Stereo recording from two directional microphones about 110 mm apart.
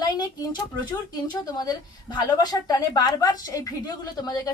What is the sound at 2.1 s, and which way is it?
Speech, 35° left (ahead or behind).